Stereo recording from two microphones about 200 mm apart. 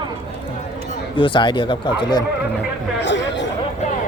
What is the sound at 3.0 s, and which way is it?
Chatter, 60° left (ahead or behind).